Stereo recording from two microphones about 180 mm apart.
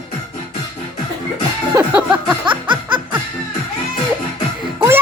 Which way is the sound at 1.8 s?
10° right (ahead or behind).